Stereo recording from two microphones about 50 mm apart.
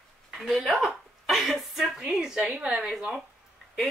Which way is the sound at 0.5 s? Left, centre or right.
Centre.